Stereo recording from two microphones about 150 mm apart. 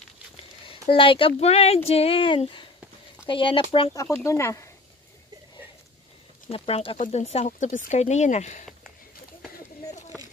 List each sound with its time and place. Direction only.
0.7 s speech: 35° left (ahead or behind)
3.9 s speech: 20° left (ahead or behind)
6.5 s speech: 40° left (ahead or behind)